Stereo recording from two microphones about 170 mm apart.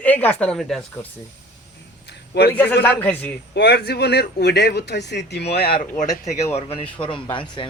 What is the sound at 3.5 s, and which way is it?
Speech, 80° left.